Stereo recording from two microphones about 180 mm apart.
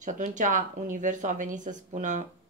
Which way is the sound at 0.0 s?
45° right (ahead or behind).